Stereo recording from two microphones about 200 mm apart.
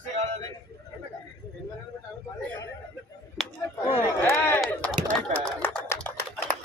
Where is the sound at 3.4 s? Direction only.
Centre (ahead or behind).